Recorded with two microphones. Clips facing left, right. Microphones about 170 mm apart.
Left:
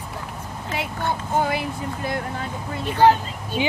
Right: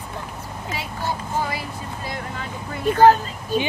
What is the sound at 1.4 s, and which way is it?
Speech, 55° left (ahead or behind).